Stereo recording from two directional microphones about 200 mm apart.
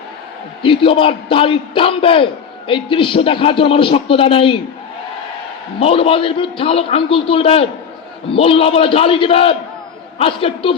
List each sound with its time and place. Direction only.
0.6 s a man's voice: 25° left (ahead or behind)
5.8 s a man's voice: 30° left (ahead or behind)